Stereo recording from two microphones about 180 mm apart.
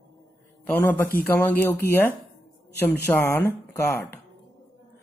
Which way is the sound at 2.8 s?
10° left (ahead or behind).